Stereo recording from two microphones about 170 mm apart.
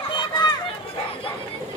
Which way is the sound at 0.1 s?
25° left (ahead or behind).